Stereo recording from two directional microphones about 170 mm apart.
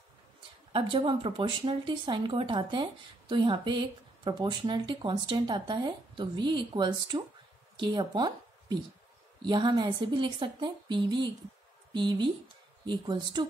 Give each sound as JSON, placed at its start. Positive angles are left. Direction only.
{"t": 0.7, "sound": "speech", "side_deg": -30}